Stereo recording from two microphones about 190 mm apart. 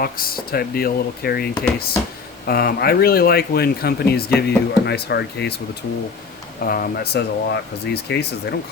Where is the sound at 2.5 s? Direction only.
50° left (ahead or behind).